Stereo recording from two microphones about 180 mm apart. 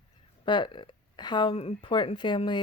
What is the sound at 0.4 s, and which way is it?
Speech, 25° left (ahead or behind).